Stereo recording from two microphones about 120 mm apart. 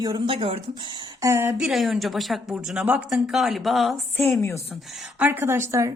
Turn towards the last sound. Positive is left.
turn(degrees=-25)  # may be behind; listen again after turning